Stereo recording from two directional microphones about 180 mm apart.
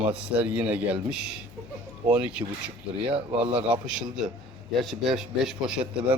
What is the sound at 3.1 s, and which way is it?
Speech, 30° right (ahead or behind).